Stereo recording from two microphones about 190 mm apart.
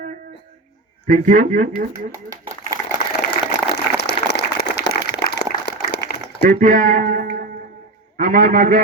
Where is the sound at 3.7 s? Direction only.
60° left (ahead or behind).